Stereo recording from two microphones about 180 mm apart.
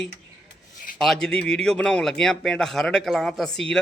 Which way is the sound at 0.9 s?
Centre (ahead or behind).